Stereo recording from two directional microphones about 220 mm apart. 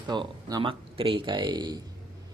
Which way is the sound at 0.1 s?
20° right (ahead or behind).